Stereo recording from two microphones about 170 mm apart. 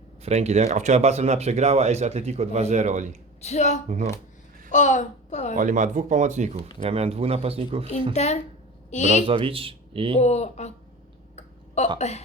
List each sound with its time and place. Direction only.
0.2 s speech: 40° right (ahead or behind)
3.4 s a woman's voice: 40° left (ahead or behind)
5.5 s speech: 45° right (ahead or behind)
8.1 s speech: 40° left (ahead or behind)
9.0 s speech: 35° right (ahead or behind)
10.2 s speech: 40° left (ahead or behind)
11.3 s a sound: 40° left (ahead or behind)
11.9 s speech: 40° left (ahead or behind)